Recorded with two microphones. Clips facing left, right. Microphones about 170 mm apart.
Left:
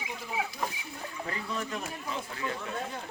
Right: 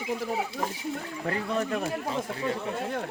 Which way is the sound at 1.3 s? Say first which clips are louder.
Right 8 dB; 55° right (ahead or behind).